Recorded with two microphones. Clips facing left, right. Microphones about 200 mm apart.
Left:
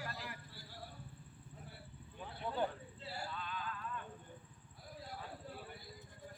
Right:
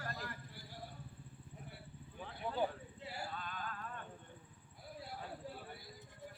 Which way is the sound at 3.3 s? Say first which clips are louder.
Left 1 dB; 45° right (ahead or behind).